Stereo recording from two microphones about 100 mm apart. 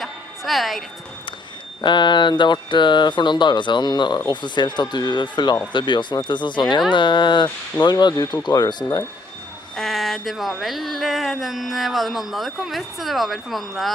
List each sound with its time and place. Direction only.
0.0 s music: centre (ahead or behind)
1.8 s speech: 50° left (ahead or behind)
9.8 s a sound: centre (ahead or behind)